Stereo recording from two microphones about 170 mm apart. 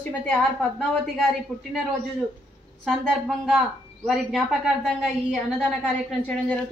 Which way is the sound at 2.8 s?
Centre (ahead or behind).